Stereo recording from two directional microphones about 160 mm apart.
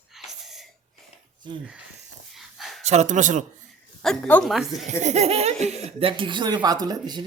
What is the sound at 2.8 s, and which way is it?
Speech, 45° right (ahead or behind).